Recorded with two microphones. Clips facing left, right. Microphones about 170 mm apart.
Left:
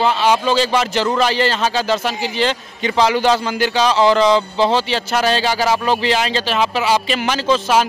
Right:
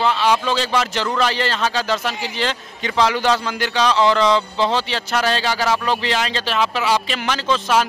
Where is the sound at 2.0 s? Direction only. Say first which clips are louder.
Left 3 dB; 30° left (ahead or behind).